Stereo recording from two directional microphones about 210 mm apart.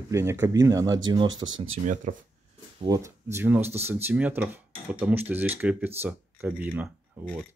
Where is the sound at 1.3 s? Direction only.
65° right (ahead or behind).